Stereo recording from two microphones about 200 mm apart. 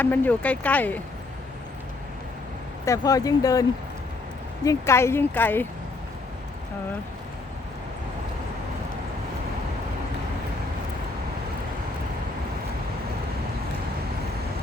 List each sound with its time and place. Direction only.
0.0 s speech: 10° left (ahead or behind)
2.8 s speech: 15° left (ahead or behind)